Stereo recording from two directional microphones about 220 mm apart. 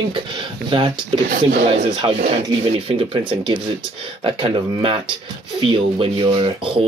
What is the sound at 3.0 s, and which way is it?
Speech, 25° right (ahead or behind).